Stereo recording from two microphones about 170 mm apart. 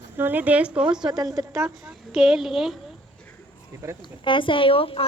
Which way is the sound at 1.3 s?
15° right (ahead or behind).